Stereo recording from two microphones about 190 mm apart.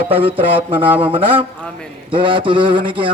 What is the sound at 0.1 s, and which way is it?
A man's voice, 30° right (ahead or behind).